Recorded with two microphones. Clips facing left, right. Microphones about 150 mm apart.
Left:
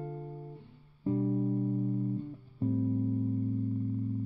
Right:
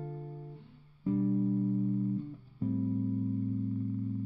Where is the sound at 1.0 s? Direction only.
25° left (ahead or behind).